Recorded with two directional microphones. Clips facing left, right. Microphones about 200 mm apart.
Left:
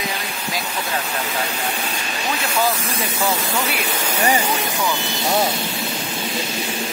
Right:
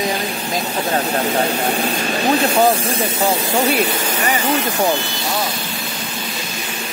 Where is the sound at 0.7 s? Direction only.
40° right (ahead or behind).